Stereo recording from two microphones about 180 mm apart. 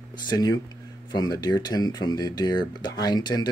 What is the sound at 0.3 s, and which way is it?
Speech, 25° left (ahead or behind).